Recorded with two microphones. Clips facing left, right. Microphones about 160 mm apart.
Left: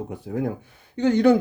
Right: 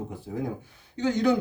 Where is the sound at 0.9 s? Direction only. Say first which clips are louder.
Left 6 dB; 55° left (ahead or behind).